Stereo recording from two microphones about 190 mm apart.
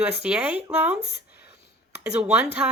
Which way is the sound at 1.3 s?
55° left (ahead or behind).